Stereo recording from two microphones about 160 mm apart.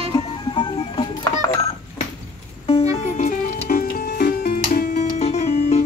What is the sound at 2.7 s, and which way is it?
Music, 40° left (ahead or behind).